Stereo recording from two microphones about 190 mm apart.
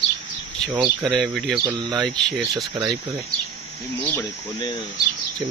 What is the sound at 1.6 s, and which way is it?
Speech, 25° right (ahead or behind).